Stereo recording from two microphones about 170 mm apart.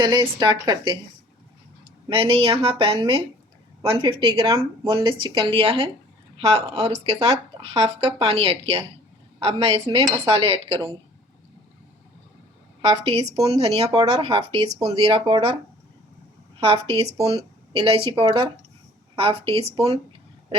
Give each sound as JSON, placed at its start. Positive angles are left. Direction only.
{"t": 0.0, "sound": "speech", "side_deg": -25}
{"t": 2.0, "sound": "speech", "side_deg": -30}
{"t": 13.1, "sound": "speech", "side_deg": -35}
{"t": 16.6, "sound": "a woman's voice", "side_deg": -35}